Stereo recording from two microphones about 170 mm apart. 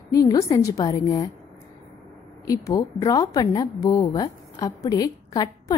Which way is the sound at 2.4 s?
20° left (ahead or behind).